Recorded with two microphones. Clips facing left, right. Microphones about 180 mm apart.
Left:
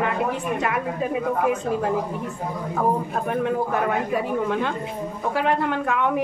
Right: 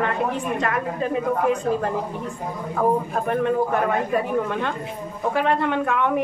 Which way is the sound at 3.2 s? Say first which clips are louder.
Right 3 dB; 5° left (ahead or behind).